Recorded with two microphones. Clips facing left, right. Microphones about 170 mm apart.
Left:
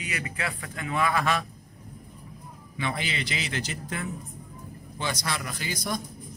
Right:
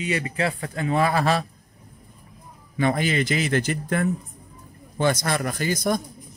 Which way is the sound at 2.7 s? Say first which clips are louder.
Right 9 dB; 45° right (ahead or behind).